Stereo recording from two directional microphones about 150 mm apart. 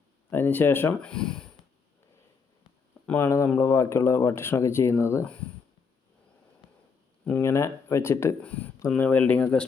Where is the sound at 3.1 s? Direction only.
15° left (ahead or behind).